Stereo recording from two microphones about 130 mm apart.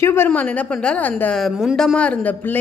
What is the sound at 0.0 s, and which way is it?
Speech, 20° left (ahead or behind).